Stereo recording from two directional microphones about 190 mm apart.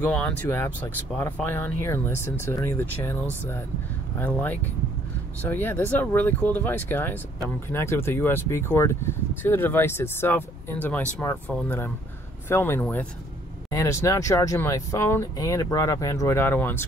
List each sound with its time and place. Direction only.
0.0 s speech: 5° left (ahead or behind)
4.2 s speech: 10° left (ahead or behind)